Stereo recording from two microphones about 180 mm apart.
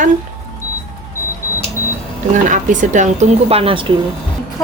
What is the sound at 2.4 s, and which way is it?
Speech, 45° right (ahead or behind).